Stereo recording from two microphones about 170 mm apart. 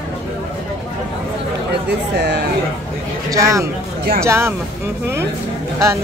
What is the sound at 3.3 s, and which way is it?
Speech, 20° right (ahead or behind).